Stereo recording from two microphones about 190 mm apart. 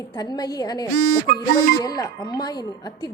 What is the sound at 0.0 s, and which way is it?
Speech, 20° left (ahead or behind).